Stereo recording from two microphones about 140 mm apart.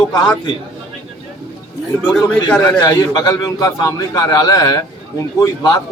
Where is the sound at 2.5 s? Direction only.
5° left (ahead or behind).